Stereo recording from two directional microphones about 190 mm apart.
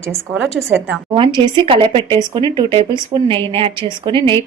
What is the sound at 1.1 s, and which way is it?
Speech, 25° right (ahead or behind).